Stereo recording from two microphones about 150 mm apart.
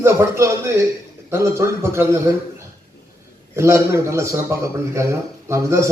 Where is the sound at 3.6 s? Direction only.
20° right (ahead or behind).